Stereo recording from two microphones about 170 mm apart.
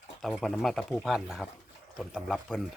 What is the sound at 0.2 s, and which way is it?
Speech, centre (ahead or behind).